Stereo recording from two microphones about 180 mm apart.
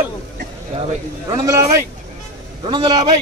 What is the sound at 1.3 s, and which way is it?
Speech, 20° right (ahead or behind).